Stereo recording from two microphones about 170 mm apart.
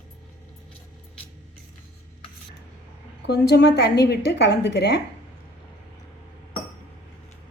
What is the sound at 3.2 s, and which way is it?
A woman's voice, 80° left.